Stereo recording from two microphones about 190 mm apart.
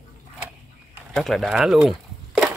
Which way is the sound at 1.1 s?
Centre (ahead or behind).